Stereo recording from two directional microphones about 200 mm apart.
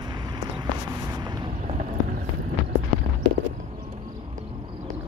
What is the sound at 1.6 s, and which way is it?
Boat, 35° right (ahead or behind).